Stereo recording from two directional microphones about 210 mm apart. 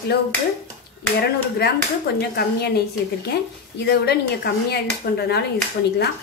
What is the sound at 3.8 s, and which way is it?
A woman's voice, 50° left (ahead or behind).